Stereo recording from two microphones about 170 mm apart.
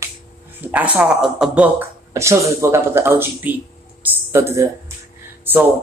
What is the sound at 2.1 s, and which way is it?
Speech, 15° right (ahead or behind).